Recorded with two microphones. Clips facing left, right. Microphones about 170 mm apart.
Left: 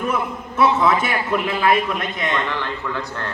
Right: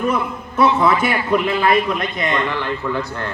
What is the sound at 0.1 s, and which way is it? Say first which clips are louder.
A man's voice: right 2 dB; 5° left (ahead or behind).